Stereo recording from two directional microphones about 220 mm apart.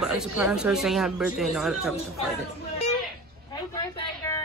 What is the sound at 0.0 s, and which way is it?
Speech, centre (ahead or behind).